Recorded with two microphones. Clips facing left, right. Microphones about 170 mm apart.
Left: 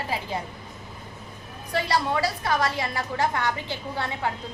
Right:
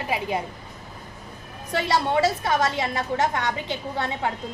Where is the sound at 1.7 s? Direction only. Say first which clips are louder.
Right 2 dB; 25° right (ahead or behind).